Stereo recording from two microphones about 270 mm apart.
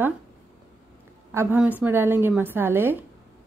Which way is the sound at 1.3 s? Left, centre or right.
Centre.